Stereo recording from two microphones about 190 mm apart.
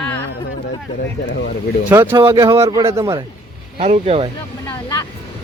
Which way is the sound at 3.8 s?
35° right (ahead or behind).